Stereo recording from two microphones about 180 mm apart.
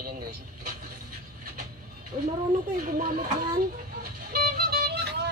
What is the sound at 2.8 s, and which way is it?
Vehicle, 50° right (ahead or behind).